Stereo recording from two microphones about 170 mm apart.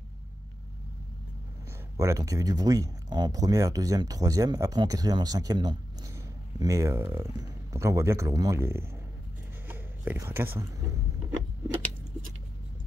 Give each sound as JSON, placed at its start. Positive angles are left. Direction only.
{"t": 2.0, "sound": "speech", "side_deg": -20}